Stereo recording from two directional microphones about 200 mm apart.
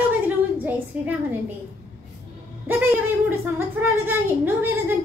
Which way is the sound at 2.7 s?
10° right (ahead or behind).